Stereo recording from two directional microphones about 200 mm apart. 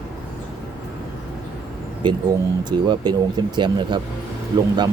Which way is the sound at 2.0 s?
20° right (ahead or behind).